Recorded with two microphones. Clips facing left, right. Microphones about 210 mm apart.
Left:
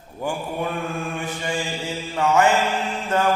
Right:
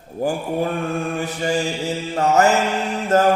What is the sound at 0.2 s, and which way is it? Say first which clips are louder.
Mantra: right 5 dB; 35° right (ahead or behind).